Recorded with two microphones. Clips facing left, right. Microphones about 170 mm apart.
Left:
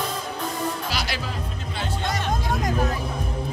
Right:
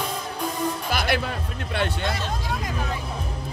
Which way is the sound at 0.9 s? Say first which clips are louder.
Right 5 dB; 55° right (ahead or behind).